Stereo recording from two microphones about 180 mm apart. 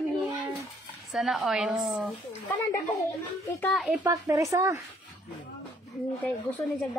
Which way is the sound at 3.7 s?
Centre (ahead or behind).